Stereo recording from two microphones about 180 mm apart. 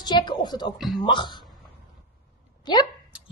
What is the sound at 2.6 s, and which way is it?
Speech, 25° left (ahead or behind).